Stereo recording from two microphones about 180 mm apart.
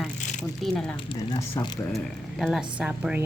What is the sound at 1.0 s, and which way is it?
Speech, 25° left (ahead or behind).